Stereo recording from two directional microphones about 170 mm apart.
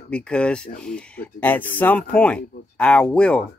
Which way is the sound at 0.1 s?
5° left (ahead or behind).